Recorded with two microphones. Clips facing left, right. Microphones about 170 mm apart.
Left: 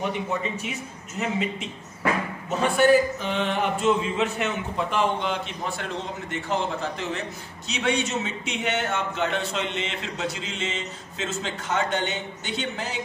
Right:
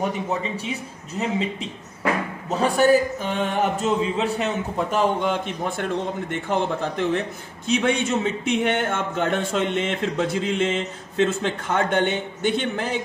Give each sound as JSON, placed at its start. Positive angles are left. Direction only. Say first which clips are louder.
{"t": 0.4, "sound": "a man's voice", "louder": "right 2 dB", "side_deg": -35}